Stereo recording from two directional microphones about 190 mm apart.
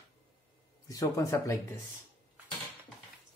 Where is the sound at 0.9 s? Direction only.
15° left (ahead or behind).